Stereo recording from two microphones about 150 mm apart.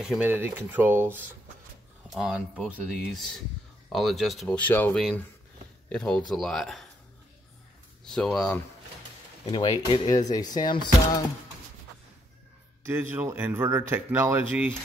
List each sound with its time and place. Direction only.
0.0 s speech: 10° right (ahead or behind)
2.0 s speech: 5° right (ahead or behind)
8.0 s speech: 5° left (ahead or behind)
9.5 s speech: 25° left (ahead or behind)
12.8 s speech: 15° right (ahead or behind)